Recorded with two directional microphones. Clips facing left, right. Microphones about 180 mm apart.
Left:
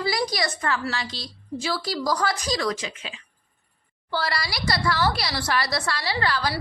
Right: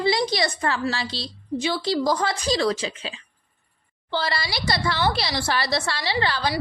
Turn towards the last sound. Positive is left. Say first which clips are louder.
# right 1 dB
turn(degrees=-25)  # may be behind; listen again after turning